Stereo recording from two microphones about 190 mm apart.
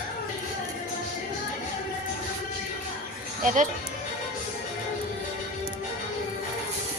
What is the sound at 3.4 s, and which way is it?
Speech, 40° right (ahead or behind).